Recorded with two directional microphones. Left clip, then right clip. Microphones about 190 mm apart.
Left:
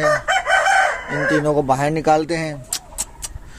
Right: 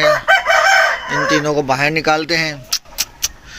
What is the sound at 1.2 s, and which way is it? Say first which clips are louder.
Speech: even; 15° left (ahead or behind).